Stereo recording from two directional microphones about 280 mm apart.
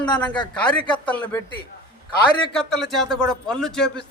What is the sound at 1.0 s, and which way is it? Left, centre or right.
Speech, centre.